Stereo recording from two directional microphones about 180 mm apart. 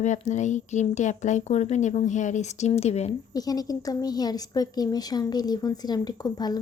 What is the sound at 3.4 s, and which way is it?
Speech, 20° left (ahead or behind).